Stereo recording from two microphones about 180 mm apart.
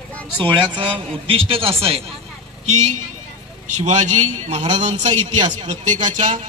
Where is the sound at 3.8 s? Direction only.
40° right (ahead or behind).